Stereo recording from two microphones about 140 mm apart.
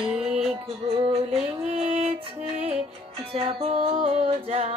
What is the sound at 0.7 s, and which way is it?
Music, 45° right (ahead or behind).